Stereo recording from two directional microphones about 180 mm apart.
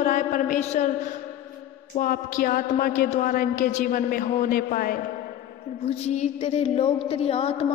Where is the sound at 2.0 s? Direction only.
50° left (ahead or behind).